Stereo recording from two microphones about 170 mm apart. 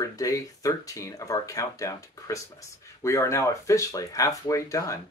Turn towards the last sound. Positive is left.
turn(degrees=20)  # may be behind; listen again after turning